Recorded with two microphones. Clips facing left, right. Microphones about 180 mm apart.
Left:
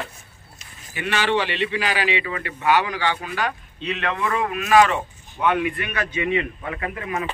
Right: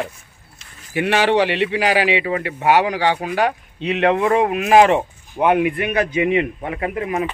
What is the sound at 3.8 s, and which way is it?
A man's voice, 20° right (ahead or behind).